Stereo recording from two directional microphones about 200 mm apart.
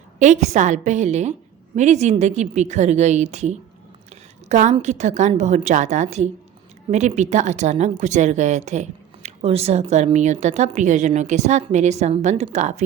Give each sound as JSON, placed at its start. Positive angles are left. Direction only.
{"t": 0.2, "sound": "speech", "side_deg": -35}